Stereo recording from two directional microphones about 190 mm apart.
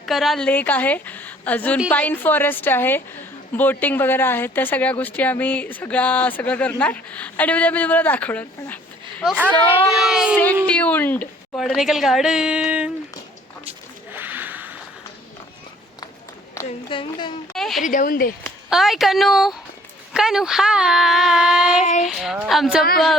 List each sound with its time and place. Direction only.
0.0 s speech: centre (ahead or behind)
9.2 s a child's voice: 5° right (ahead or behind)
10.3 s a woman's voice: 10° left (ahead or behind)
14.1 s a sound: 10° right (ahead or behind)
16.6 s a sound: 15° left (ahead or behind)
16.9 s speech: 25° left (ahead or behind)
17.5 s a woman's voice: centre (ahead or behind)
17.8 s speech: 45° left (ahead or behind)
18.7 s a woman's voice: centre (ahead or behind)